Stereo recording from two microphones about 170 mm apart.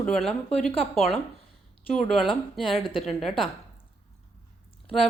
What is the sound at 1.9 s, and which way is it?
Speech, centre (ahead or behind).